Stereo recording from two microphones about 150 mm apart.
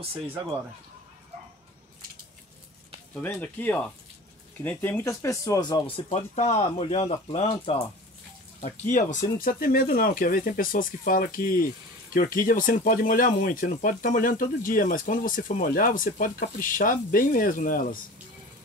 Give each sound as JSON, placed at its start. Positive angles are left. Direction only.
{"t": 3.2, "sound": "speech", "side_deg": 10}
{"t": 6.0, "sound": "speech", "side_deg": 50}
{"t": 8.9, "sound": "speech", "side_deg": 60}